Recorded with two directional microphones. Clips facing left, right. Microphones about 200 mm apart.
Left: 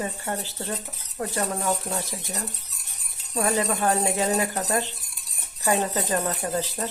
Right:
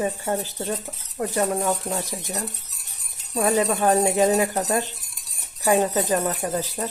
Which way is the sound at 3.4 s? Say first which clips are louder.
Right 4 dB; 15° right (ahead or behind).